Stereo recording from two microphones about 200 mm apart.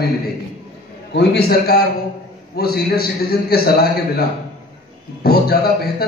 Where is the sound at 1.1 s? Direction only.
55° left (ahead or behind).